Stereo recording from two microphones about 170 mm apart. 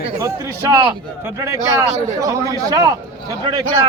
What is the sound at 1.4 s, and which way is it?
A man's voice, 20° right (ahead or behind).